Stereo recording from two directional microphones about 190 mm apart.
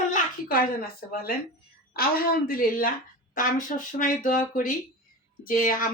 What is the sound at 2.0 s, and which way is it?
A woman's voice, 50° left (ahead or behind).